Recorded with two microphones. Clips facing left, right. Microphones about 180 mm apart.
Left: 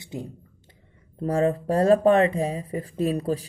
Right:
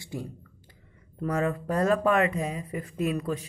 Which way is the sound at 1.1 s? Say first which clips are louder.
Left 5 dB; 30° left (ahead or behind).